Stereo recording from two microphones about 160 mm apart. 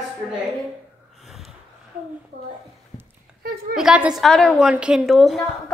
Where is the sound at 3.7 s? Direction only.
5° right (ahead or behind).